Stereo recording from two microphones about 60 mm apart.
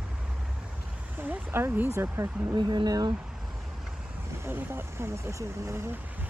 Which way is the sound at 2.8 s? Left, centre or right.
Right.